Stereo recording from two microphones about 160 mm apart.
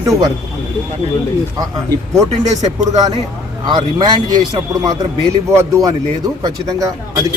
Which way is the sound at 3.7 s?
30° right (ahead or behind).